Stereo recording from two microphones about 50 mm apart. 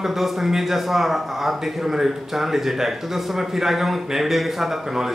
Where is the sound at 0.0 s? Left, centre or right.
Centre.